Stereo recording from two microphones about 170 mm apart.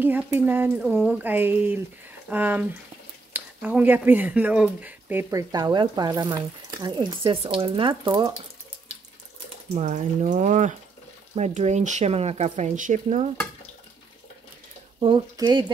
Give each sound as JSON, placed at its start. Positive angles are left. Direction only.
{"t": 0.0, "sound": "speech", "side_deg": -10}
{"t": 5.5, "sound": "speech", "side_deg": -25}
{"t": 9.8, "sound": "speech", "side_deg": -45}
{"t": 15.0, "sound": "speech", "side_deg": -25}